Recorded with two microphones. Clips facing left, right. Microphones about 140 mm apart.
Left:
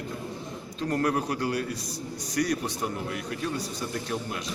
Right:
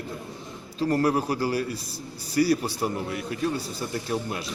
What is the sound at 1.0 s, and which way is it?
Speech, 30° right (ahead or behind).